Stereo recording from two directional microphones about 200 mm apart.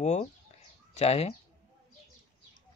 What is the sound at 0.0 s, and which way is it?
Bird, 35° left (ahead or behind).